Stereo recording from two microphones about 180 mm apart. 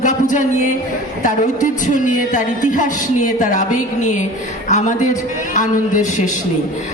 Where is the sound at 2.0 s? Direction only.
45° left (ahead or behind).